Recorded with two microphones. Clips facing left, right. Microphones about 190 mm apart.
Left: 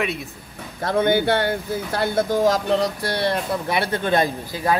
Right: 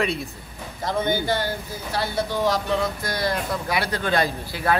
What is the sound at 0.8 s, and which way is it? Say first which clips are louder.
Speech: left 5 dB; 60° left (ahead or behind).